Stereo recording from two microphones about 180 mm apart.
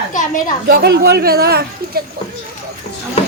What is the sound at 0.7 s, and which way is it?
Speech, 60° right (ahead or behind).